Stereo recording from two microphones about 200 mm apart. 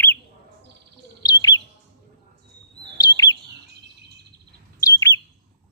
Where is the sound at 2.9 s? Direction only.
20° left (ahead or behind).